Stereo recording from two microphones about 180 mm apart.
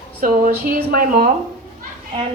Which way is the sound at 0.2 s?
55° right (ahead or behind).